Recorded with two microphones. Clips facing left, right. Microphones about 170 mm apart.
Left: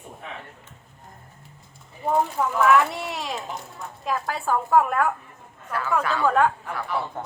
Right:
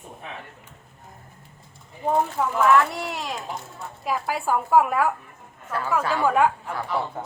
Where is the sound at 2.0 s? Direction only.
10° right (ahead or behind).